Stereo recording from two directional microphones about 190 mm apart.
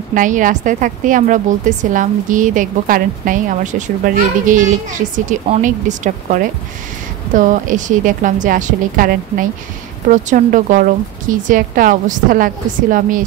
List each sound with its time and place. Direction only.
0.1 s a woman's voice: 45° right (ahead or behind)